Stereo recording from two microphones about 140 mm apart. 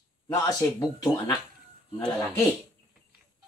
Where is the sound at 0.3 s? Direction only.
25° left (ahead or behind).